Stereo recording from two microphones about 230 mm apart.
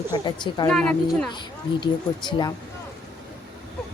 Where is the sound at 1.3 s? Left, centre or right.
Centre.